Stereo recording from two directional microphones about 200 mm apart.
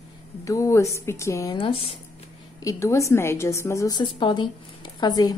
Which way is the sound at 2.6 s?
15° left (ahead or behind).